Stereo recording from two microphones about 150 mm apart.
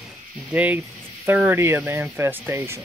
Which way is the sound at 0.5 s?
10° right (ahead or behind).